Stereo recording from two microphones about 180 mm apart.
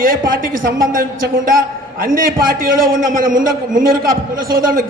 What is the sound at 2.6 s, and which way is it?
A man's voice, 50° right (ahead or behind).